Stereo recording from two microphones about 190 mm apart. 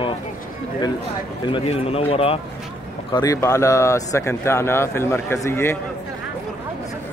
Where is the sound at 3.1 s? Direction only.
20° left (ahead or behind).